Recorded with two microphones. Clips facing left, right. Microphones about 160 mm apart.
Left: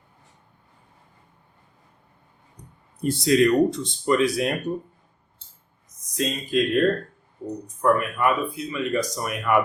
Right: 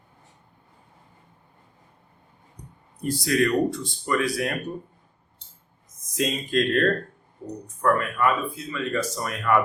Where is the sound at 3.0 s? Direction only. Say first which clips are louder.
Left 4 dB; 25° left (ahead or behind).